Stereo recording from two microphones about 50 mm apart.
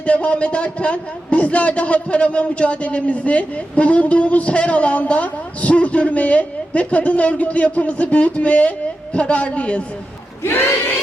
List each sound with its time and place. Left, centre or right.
0.0 s a man's voice: left
10.4 s speech: left